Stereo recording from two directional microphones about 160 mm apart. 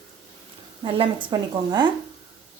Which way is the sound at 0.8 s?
30° right (ahead or behind).